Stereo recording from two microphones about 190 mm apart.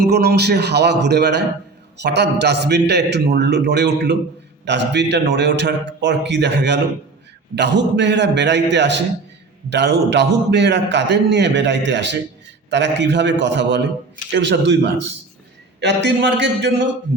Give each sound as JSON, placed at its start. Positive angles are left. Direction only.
{"t": 0.0, "sound": "a man's voice", "side_deg": -60}